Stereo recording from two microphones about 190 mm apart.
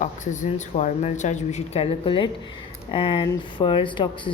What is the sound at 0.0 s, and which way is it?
Speech, 40° left (ahead or behind).